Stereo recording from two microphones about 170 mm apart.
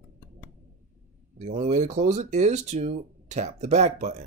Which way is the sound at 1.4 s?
45° right (ahead or behind).